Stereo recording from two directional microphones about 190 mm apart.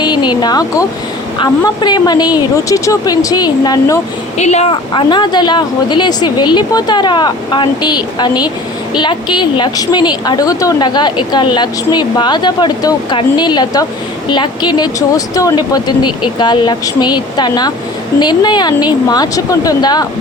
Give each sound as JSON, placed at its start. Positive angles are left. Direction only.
{"t": 0.0, "sound": "speech", "side_deg": 25}
{"t": 4.4, "sound": "speech", "side_deg": 35}